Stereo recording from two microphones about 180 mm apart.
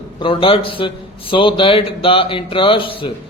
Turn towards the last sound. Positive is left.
turn(degrees=30)  # may be behind; listen again after turning